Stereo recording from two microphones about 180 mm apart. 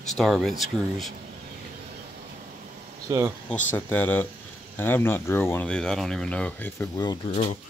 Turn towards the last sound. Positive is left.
turn(degrees=30)  # may be behind; listen again after turning